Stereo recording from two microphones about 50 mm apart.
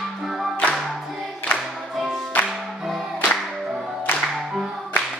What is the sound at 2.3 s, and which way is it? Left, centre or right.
Music, left.